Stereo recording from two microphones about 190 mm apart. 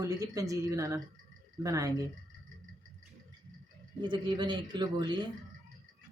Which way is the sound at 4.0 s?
25° right (ahead or behind).